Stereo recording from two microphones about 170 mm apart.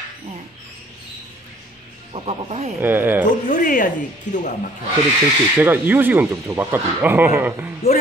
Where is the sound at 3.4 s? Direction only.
50° left (ahead or behind).